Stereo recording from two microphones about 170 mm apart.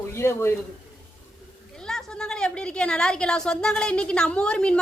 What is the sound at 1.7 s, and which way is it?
A woman's voice, 5° left (ahead or behind).